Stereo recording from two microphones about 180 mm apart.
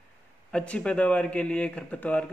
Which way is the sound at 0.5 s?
5° left (ahead or behind).